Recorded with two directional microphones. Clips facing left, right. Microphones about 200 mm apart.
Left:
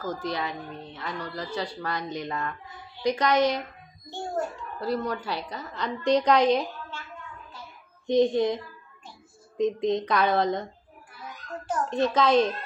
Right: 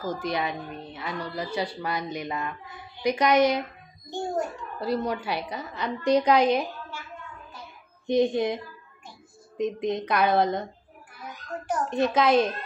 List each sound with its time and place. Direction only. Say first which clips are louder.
0.0 s a woman's voice: right 2 dB; 15° right (ahead or behind)
9.6 s a woman's voice: left 2 dB; 5° right (ahead or behind)
11.6 s a woman's voice: even; 10° right (ahead or behind)